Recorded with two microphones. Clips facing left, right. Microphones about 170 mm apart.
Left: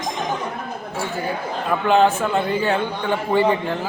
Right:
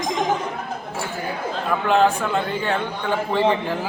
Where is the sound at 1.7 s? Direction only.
Centre (ahead or behind).